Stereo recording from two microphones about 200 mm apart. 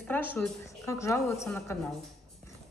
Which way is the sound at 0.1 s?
10° left (ahead or behind).